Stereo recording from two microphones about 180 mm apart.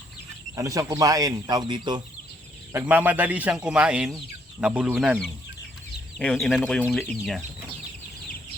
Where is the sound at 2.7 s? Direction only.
10° right (ahead or behind).